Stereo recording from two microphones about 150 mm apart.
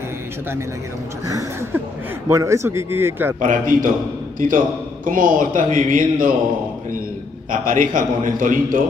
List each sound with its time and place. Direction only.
2.2 s a man's voice: 20° right (ahead or behind)
3.3 s speech: 65° right (ahead or behind)
7.6 s speech: 65° right (ahead or behind)